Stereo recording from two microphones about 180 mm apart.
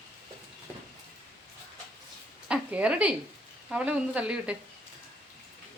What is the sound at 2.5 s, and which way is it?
Speech, 5° right (ahead or behind).